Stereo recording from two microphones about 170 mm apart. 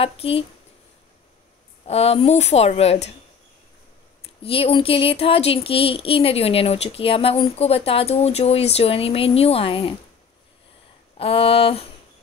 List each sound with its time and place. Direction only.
0.0 s speech: 35° left (ahead or behind)
1.9 s speech: 35° left (ahead or behind)
4.2 s speech: 35° left (ahead or behind)
11.1 s speech: 35° left (ahead or behind)